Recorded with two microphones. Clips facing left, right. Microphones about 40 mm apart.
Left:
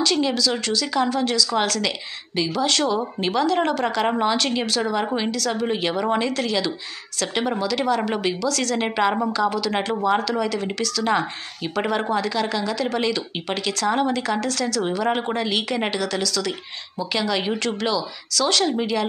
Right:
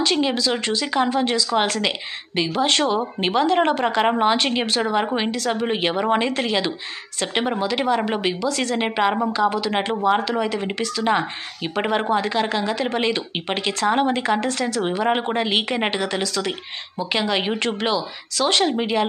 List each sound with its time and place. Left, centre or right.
0.0 s a woman's voice: right